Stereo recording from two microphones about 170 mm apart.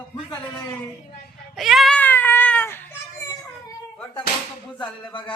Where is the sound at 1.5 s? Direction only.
Centre (ahead or behind).